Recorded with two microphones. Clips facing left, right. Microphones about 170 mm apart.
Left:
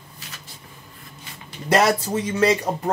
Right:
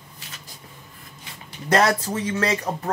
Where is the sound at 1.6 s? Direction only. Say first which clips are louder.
Left 1 dB; 10° left (ahead or behind).